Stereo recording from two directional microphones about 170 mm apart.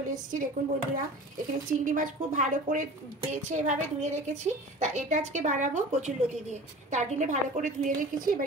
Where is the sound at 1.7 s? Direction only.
50° right (ahead or behind).